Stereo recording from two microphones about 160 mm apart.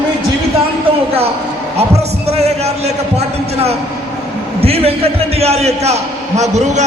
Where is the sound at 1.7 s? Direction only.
40° right (ahead or behind).